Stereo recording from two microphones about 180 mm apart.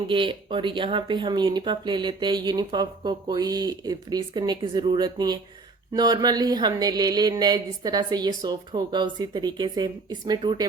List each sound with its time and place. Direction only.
0.1 s speech: 30° right (ahead or behind)